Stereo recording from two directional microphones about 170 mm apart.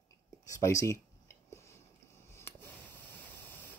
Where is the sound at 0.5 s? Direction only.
20° left (ahead or behind).